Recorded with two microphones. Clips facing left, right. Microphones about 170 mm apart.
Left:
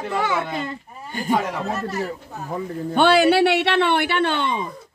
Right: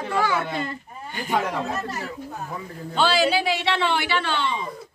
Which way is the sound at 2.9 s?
60° left (ahead or behind).